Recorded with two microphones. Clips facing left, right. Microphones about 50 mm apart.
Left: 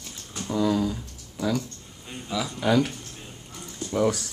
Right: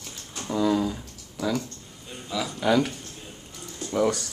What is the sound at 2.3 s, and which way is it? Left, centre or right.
Speech, centre.